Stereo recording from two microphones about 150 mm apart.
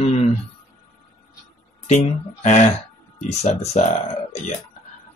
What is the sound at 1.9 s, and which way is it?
Speech, 50° left (ahead or behind).